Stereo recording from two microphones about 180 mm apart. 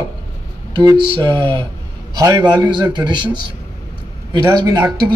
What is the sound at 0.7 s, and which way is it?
Speech, 25° right (ahead or behind).